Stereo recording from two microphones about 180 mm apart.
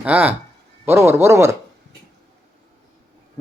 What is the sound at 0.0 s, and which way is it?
Speech, 10° right (ahead or behind).